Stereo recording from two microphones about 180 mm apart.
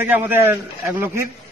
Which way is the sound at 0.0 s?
10° right (ahead or behind).